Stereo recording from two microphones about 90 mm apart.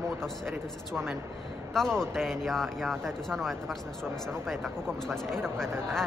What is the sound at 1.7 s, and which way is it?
Speech, 5° left (ahead or behind).